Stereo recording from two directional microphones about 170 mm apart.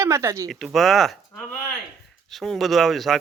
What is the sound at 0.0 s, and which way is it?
Speech, 15° right (ahead or behind).